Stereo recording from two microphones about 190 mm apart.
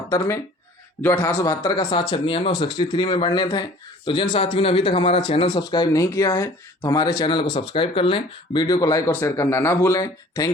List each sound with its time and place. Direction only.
1.0 s a man's voice: 10° left (ahead or behind)